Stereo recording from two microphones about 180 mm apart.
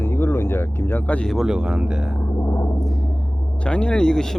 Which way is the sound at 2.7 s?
Centre (ahead or behind).